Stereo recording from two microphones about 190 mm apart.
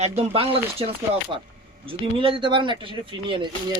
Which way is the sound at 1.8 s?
30° right (ahead or behind).